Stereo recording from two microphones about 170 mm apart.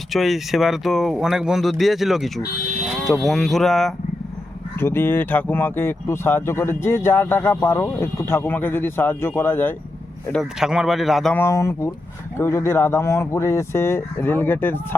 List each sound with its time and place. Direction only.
0.1 s speech: centre (ahead or behind)
4.8 s speech: 15° left (ahead or behind)
10.3 s speech: 5° right (ahead or behind)
11.3 s speech: 15° left (ahead or behind)